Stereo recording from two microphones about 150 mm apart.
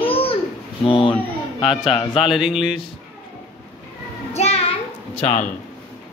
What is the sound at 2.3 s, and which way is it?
Speech, 5° right (ahead or behind).